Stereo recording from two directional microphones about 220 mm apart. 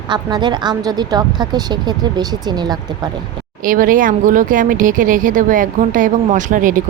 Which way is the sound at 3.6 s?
40° right (ahead or behind).